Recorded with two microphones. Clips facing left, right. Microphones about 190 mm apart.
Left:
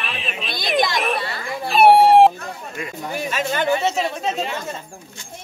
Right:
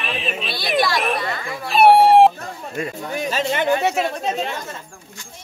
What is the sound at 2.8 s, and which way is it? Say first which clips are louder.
Speech: right 6 dB; 40° right (ahead or behind).